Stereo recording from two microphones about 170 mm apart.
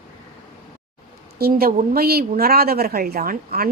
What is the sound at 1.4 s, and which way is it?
A woman's voice, 60° right (ahead or behind).